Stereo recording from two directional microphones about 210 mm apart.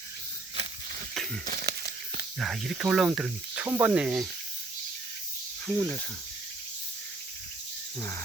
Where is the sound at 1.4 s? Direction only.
45° right (ahead or behind).